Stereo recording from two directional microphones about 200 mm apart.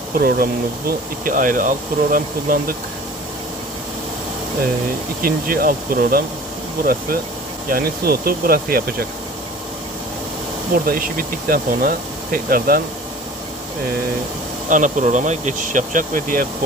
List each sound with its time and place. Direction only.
0.2 s speech: 50° right (ahead or behind)
5.2 s speech: 45° right (ahead or behind)
10.8 s speech: 45° right (ahead or behind)
14.7 s speech: 40° right (ahead or behind)